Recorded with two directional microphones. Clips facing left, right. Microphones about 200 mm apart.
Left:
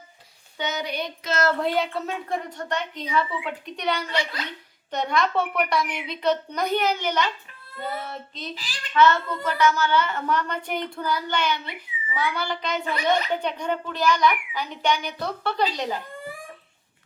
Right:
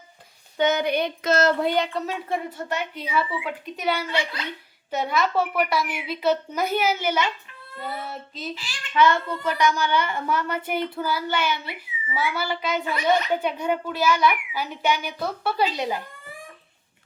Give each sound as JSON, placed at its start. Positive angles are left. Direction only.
{"t": 0.6, "sound": "speech", "side_deg": -55}
{"t": 1.5, "sound": "a woman's voice", "side_deg": 0}